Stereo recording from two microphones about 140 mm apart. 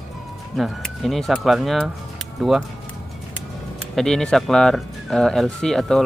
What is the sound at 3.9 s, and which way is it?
Speech, 5° left (ahead or behind).